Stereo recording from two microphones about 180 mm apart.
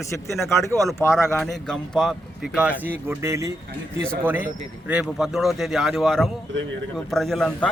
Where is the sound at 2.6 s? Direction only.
10° right (ahead or behind).